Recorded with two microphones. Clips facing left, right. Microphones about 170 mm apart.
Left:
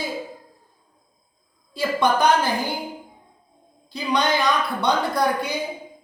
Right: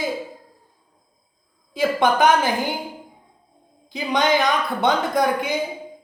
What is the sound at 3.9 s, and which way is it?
A woman's voice, 15° right (ahead or behind).